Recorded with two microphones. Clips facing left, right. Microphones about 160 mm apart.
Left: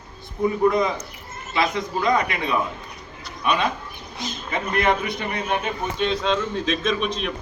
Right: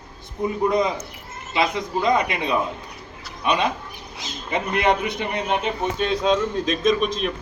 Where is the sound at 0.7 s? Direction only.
20° right (ahead or behind).